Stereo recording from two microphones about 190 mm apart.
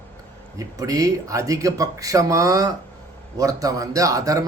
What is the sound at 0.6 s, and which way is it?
A man's voice, 20° right (ahead or behind).